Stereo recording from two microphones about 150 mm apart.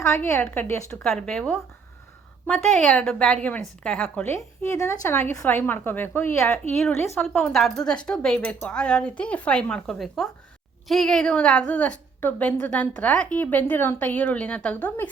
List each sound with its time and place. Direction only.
0.0 s a woman's voice: 15° left (ahead or behind)
1.0 s a woman's voice: 5° left (ahead or behind)
7.2 s a woman's voice: 5° left (ahead or behind)